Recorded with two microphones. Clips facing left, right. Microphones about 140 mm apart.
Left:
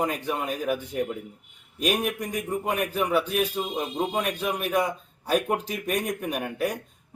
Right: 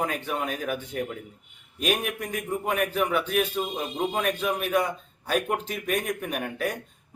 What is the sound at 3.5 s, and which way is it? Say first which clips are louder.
A man's voice: left 1 dB; 10° left (ahead or behind).